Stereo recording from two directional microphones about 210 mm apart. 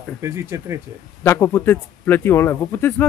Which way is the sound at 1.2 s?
10° left (ahead or behind).